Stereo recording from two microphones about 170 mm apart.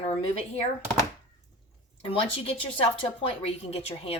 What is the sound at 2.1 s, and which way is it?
Speech, 35° left (ahead or behind).